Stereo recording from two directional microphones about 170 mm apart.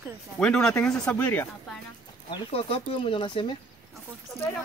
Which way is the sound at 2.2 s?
30° left (ahead or behind).